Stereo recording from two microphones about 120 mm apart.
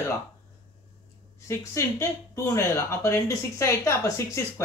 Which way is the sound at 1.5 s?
25° left (ahead or behind).